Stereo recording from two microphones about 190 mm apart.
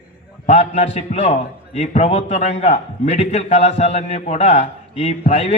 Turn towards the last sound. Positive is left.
turn(degrees=35)  # may be behind; listen again after turning